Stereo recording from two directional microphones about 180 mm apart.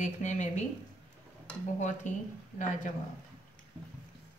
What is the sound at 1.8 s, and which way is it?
Speech, 40° left (ahead or behind).